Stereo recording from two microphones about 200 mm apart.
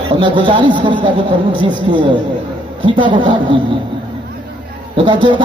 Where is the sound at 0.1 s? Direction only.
25° right (ahead or behind).